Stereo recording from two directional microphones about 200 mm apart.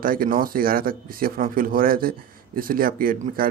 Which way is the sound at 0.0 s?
45° right (ahead or behind).